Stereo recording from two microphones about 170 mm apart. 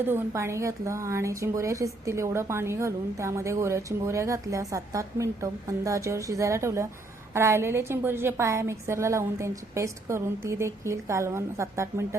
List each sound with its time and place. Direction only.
0.0 s a woman's voice: 15° right (ahead or behind)